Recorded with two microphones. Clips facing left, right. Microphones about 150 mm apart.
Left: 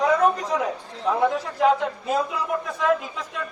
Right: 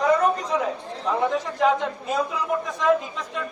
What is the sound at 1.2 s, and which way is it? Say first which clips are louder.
A man's voice: left 1 dB; centre (ahead or behind).